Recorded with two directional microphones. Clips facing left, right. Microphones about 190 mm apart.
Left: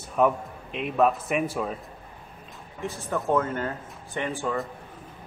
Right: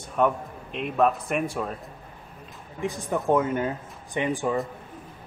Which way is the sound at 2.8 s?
15° right (ahead or behind).